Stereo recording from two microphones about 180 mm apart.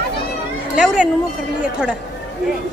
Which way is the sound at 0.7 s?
5° right (ahead or behind).